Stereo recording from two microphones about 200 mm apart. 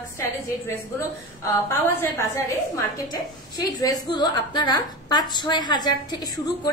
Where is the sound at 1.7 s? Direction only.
10° left (ahead or behind).